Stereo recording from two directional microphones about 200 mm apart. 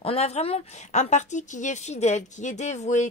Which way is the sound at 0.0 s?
30° left (ahead or behind).